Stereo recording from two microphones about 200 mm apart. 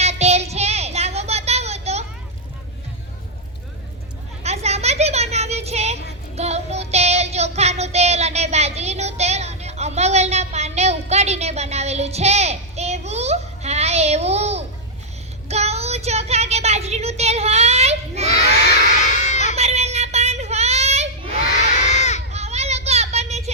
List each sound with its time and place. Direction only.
0.0 s child singing: 30° right (ahead or behind)
4.4 s a sound: 30° right (ahead or behind)
6.3 s child singing: 30° right (ahead or behind)
15.4 s a sound: 30° right (ahead or behind)
19.0 s crowd: 35° left (ahead or behind)
19.5 s child singing: 30° right (ahead or behind)
21.8 s crowd: 35° left (ahead or behind)
22.3 s children playing: 35° right (ahead or behind)